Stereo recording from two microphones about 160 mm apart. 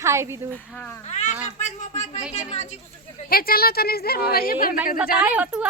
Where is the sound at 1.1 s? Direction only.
45° left (ahead or behind).